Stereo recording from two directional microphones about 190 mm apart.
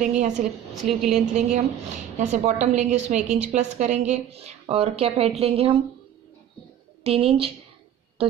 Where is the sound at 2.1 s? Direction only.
35° right (ahead or behind).